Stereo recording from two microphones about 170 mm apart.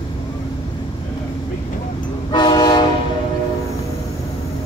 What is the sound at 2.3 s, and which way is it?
Train, 25° left (ahead or behind).